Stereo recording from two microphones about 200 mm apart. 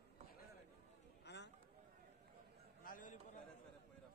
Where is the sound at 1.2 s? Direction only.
60° left (ahead or behind).